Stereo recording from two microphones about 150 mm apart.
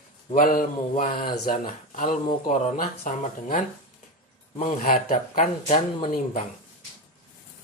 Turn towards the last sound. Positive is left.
turn(degrees=45)  # may be behind; listen again after turning